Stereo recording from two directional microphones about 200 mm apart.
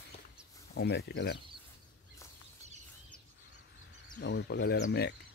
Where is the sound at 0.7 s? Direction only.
55° left (ahead or behind).